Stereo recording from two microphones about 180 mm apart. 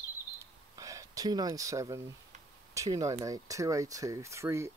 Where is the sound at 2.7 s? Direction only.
20° right (ahead or behind).